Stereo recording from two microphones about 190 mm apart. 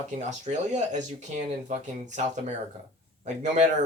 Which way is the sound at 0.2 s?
40° right (ahead or behind).